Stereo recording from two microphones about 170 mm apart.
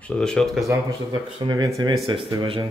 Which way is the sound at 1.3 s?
25° right (ahead or behind).